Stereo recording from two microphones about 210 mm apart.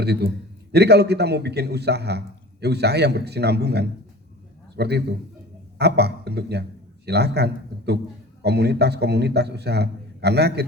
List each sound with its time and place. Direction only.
0.0 s a man's voice: 50° right (ahead or behind)